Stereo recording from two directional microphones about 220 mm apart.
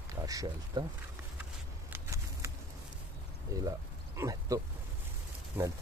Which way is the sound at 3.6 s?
15° right (ahead or behind).